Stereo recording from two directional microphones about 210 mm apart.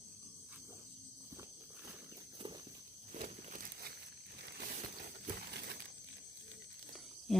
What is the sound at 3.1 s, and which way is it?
Walk, 35° right (ahead or behind).